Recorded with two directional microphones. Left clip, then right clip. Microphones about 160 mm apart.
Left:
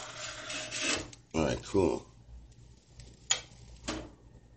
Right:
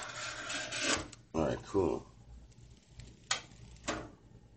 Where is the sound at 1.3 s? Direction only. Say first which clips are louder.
Left 3 dB; 20° left (ahead or behind).